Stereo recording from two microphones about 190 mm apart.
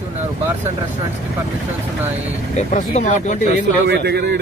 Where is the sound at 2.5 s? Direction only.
35° left (ahead or behind).